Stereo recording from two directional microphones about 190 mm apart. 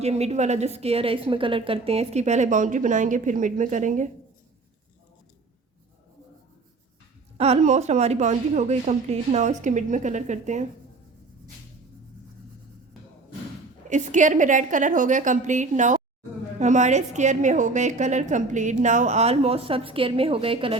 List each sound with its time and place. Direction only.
0.0 s a woman's voice: 35° right (ahead or behind)
7.3 s a woman's voice: 35° right (ahead or behind)
13.9 s a woman's voice: 40° right (ahead or behind)